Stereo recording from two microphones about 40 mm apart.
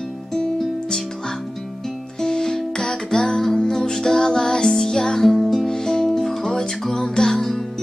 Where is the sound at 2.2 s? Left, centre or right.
Centre.